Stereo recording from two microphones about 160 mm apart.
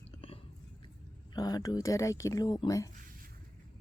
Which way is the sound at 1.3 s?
25° left (ahead or behind).